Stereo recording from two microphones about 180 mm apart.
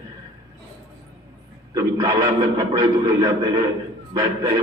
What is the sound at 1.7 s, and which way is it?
A man's voice, 20° right (ahead or behind).